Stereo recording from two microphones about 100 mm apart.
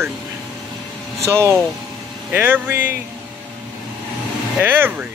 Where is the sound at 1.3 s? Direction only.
25° right (ahead or behind).